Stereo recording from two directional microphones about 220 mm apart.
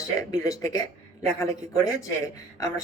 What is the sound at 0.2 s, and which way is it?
A woman's voice, 15° left (ahead or behind).